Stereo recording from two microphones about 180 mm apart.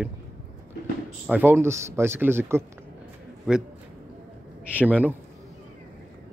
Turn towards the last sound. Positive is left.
turn(degrees=-10)  # may be behind; listen again after turning